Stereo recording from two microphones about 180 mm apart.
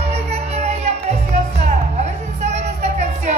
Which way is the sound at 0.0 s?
35° right (ahead or behind).